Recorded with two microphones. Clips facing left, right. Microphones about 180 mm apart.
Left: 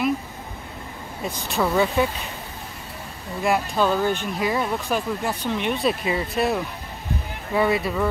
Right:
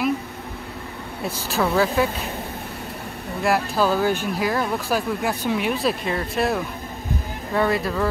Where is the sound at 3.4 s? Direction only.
5° right (ahead or behind).